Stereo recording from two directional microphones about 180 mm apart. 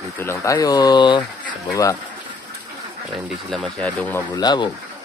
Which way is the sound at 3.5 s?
5° left (ahead or behind).